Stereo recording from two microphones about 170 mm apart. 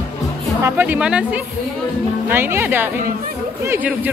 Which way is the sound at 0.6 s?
15° right (ahead or behind).